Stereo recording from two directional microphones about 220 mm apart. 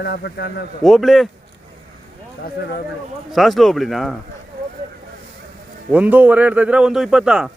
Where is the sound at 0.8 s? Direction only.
Centre (ahead or behind).